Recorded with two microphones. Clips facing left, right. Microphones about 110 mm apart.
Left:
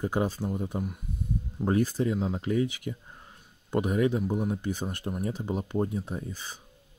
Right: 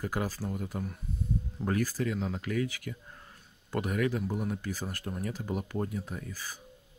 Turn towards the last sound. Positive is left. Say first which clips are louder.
# left 4 dB
turn(degrees=25)  # may be behind; listen again after turning